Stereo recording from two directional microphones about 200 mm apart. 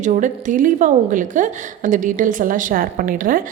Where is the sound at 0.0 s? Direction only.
40° right (ahead or behind).